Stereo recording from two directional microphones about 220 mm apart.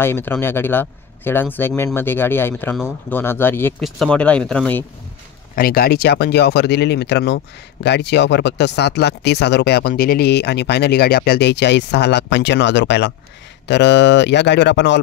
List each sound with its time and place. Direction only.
0.0 s speech: 10° left (ahead or behind)
5.6 s speech: 40° left (ahead or behind)